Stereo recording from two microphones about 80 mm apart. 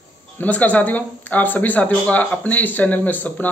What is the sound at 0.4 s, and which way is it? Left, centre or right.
Speech, left.